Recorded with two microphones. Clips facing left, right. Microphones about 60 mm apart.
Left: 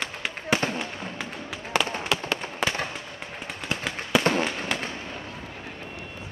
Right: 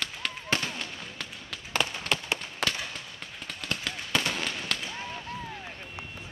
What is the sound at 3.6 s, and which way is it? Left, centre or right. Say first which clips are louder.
Fireworks: left 4 dB; centre.